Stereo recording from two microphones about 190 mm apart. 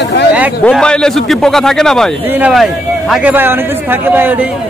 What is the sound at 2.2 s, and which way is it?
A man's voice, 10° right (ahead or behind).